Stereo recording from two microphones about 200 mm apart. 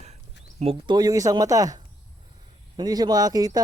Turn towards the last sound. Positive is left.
turn(degrees=-20)  # may be behind; listen again after turning